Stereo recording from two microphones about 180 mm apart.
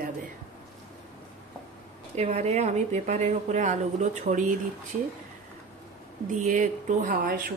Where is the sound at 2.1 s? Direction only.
40° right (ahead or behind).